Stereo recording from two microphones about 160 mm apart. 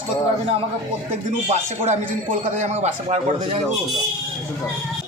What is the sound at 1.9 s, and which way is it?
A man's voice, 55° right (ahead or behind).